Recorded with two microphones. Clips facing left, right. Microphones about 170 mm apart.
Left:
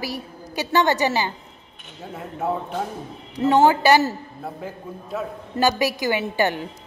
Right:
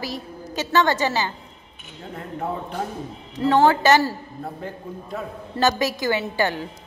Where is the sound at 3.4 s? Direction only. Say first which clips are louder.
Left 1 dB; 20° left (ahead or behind).